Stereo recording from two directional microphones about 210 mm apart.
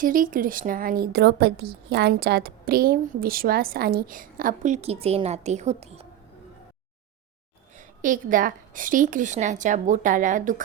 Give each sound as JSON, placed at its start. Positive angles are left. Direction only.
{"t": 0.0, "sound": "a woman's voice", "side_deg": -40}
{"t": 7.8, "sound": "a woman's voice", "side_deg": -40}